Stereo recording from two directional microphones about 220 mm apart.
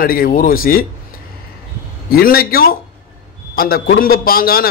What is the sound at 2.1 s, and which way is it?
A man's voice, 45° left (ahead or behind).